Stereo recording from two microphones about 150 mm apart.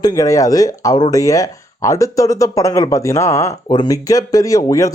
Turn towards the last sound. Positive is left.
turn(degrees=20)  # may be behind; listen again after turning